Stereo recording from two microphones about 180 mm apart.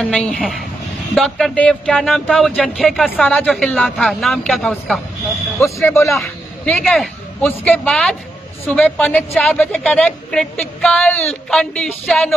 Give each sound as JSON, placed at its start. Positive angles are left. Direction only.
{"t": 0.0, "sound": "a woman's voice", "side_deg": 5}
{"t": 5.6, "sound": "a man's voice", "side_deg": 15}
{"t": 6.1, "sound": "a woman's voice", "side_deg": 5}